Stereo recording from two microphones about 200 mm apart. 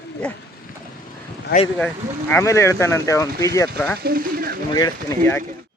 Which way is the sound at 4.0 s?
45° right (ahead or behind).